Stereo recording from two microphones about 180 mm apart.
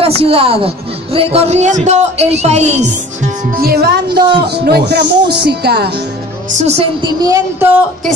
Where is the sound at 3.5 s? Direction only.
60° right (ahead or behind).